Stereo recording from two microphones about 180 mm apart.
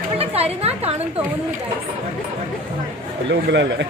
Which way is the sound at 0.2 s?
35° right (ahead or behind).